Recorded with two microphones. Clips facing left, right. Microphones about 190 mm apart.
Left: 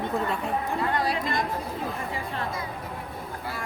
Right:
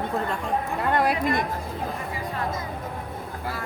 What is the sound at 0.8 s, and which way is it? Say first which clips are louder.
Chatter: right 5 dB; 60° right (ahead or behind).